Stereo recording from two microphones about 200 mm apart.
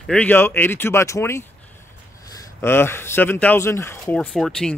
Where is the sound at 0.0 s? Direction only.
5° left (ahead or behind).